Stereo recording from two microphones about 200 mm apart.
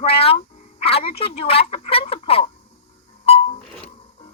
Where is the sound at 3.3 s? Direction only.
30° left (ahead or behind).